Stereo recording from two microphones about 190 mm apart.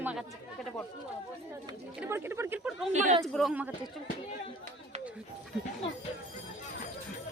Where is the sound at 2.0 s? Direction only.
10° right (ahead or behind).